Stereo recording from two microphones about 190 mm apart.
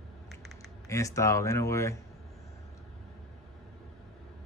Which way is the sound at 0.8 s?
15° left (ahead or behind).